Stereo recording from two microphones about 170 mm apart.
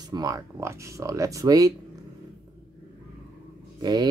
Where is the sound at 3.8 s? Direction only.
25° right (ahead or behind).